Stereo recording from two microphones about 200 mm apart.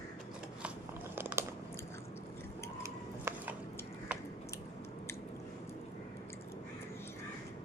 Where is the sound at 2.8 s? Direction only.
10° right (ahead or behind).